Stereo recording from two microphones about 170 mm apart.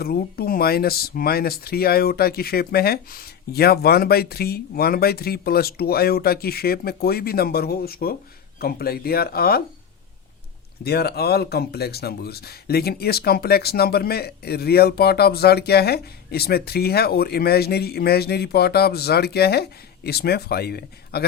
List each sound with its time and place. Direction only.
0.0 s speech: 65° left (ahead or behind)
10.8 s speech: 65° left (ahead or behind)